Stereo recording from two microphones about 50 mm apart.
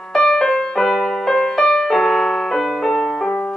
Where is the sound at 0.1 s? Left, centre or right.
Centre.